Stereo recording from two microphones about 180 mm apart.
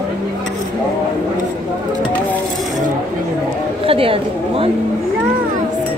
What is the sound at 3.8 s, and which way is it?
Chatter, 30° right (ahead or behind).